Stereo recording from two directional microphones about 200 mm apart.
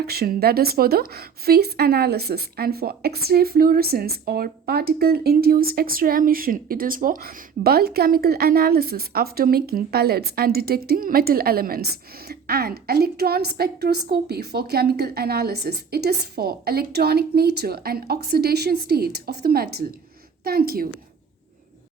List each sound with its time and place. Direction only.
0.0 s a woman's voice: 50° right (ahead or behind)